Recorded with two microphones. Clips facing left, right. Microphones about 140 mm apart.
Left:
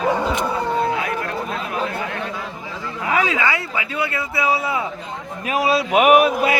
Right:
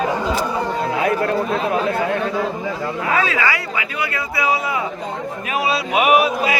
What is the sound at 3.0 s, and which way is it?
A man's voice, 15° left (ahead or behind).